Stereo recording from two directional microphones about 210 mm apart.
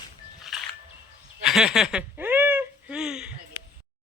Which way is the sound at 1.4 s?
5° right (ahead or behind).